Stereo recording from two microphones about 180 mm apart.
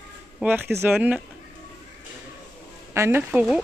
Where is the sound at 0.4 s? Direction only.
10° right (ahead or behind).